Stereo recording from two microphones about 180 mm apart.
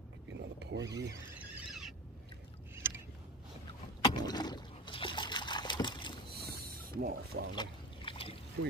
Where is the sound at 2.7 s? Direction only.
15° right (ahead or behind).